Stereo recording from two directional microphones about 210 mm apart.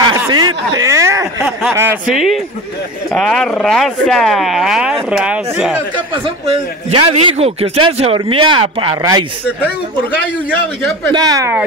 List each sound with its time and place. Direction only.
0.0 s a sound: 20° right (ahead or behind)
1.7 s speech: 10° right (ahead or behind)
5.9 s a man's voice: 30° right (ahead or behind)
11.1 s speech: 20° right (ahead or behind)